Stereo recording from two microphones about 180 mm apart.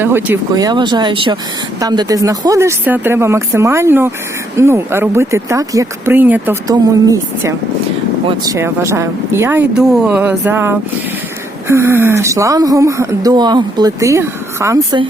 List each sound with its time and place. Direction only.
0.0 s speech: 10° right (ahead or behind)
0.5 s speech: 20° right (ahead or behind)